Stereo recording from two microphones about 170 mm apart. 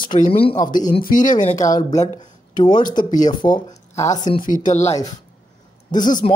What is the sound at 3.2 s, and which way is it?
Speech, 25° left (ahead or behind).